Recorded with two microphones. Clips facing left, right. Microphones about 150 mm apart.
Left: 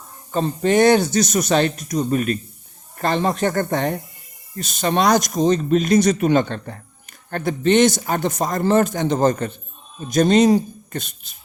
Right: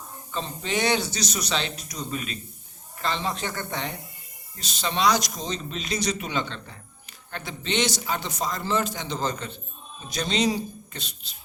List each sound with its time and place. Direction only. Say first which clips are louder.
0.3 s a man's voice: left 12 dB; 50° left (ahead or behind)